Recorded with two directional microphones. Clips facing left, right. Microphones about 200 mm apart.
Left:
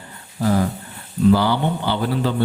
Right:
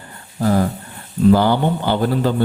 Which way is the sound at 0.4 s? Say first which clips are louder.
Right 2 dB; 45° right (ahead or behind).